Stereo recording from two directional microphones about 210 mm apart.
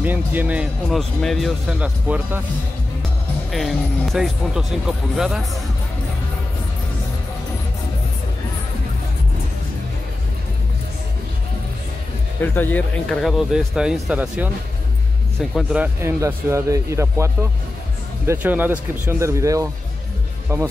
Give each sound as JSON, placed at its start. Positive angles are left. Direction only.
{"t": 0.0, "sound": "speech", "side_deg": -10}
{"t": 3.5, "sound": "speech", "side_deg": 0}
{"t": 12.4, "sound": "speech", "side_deg": 10}
{"t": 15.5, "sound": "speech", "side_deg": -5}